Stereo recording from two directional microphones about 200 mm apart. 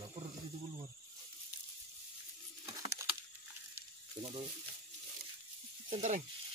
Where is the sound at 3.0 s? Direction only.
15° right (ahead or behind).